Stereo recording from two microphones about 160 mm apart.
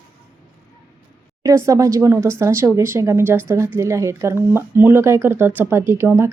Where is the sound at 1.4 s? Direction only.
20° right (ahead or behind).